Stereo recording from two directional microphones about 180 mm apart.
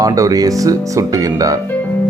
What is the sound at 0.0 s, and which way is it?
Speech, 20° right (ahead or behind).